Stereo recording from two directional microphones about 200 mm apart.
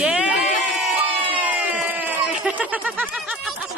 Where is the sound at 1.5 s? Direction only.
10° right (ahead or behind).